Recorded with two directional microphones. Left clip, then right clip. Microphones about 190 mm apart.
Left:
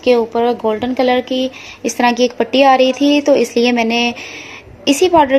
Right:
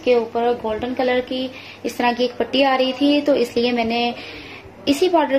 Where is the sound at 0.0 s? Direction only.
50° left (ahead or behind).